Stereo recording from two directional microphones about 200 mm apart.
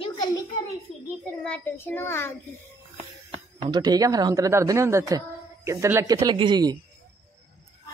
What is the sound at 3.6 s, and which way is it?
Speech, 20° right (ahead or behind).